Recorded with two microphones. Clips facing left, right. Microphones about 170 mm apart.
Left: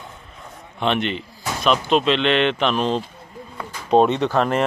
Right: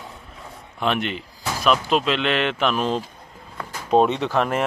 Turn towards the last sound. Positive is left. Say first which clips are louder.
# left 2 dB
turn(degrees=-5)  # may be behind; listen again after turning